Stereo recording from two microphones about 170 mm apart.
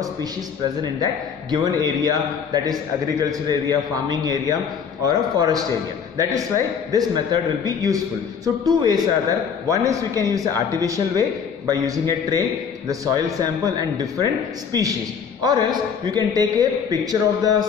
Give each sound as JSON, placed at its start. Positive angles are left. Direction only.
{"t": 1.0, "sound": "a man's voice", "side_deg": -25}